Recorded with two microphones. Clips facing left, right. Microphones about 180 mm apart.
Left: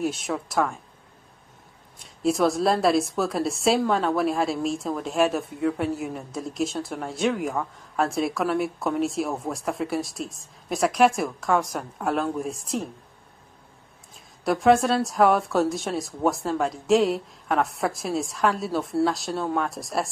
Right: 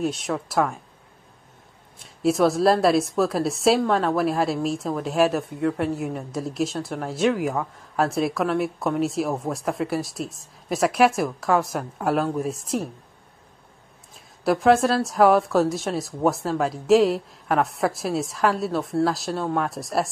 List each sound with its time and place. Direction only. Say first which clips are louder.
0.0 s a woman's voice: right 1 dB; centre (ahead or behind)
2.0 s a woman's voice: right 2 dB; centre (ahead or behind)
14.1 s a woman's voice: right 3 dB; centre (ahead or behind)